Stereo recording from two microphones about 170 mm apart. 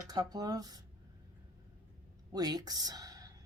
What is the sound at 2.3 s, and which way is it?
A woman's voice, 20° right (ahead or behind).